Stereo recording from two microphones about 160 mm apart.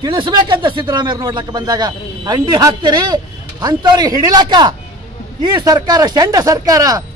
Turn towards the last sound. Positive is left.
turn(degrees=-25)  # may be behind; listen again after turning